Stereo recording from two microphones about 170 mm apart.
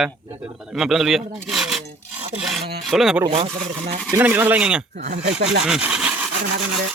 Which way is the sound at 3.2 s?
35° right (ahead or behind).